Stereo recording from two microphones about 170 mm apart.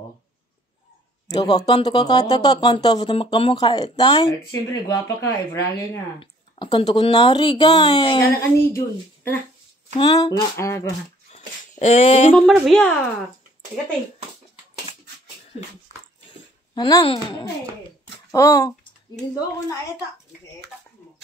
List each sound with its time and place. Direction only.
1.3 s speech: 25° left (ahead or behind)
6.1 s speech: 30° left (ahead or behind)
11.8 s a sound: 40° left (ahead or behind)
12.4 s a woman's voice: centre (ahead or behind)
16.7 s speech: 25° left (ahead or behind)